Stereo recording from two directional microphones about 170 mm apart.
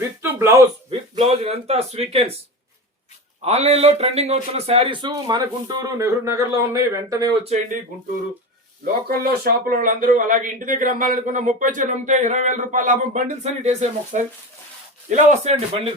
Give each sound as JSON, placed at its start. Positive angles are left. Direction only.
{"t": 0.2, "sound": "speech", "side_deg": -15}
{"t": 0.9, "sound": "speech", "side_deg": -35}
{"t": 3.4, "sound": "a man's voice", "side_deg": -40}
{"t": 9.0, "sound": "speech", "side_deg": -65}